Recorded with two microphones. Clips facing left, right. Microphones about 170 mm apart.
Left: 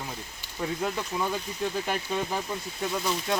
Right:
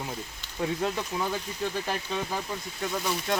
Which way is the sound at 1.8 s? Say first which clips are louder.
Left 2 dB; 10° left (ahead or behind).